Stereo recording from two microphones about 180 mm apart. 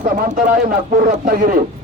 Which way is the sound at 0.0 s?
50° right (ahead or behind).